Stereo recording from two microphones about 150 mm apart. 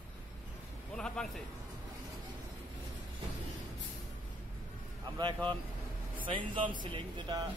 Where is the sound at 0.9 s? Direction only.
5° left (ahead or behind).